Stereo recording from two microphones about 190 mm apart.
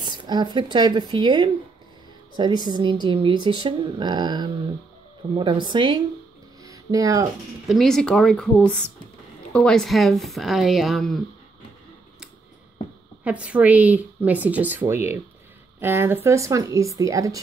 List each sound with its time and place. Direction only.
0.0 s speech: 25° right (ahead or behind)
6.6 s a sound: 20° right (ahead or behind)
7.6 s speech: centre (ahead or behind)
13.2 s speech: 5° right (ahead or behind)